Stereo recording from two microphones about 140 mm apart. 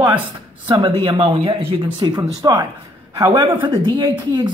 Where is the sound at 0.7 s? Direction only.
40° right (ahead or behind).